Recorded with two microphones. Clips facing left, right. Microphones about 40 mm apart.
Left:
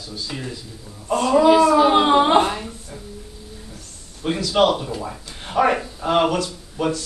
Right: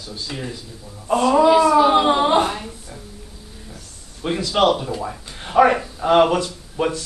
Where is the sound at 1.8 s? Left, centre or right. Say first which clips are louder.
Even; centre.